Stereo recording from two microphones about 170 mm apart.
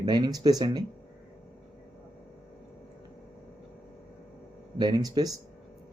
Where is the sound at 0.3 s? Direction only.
25° right (ahead or behind).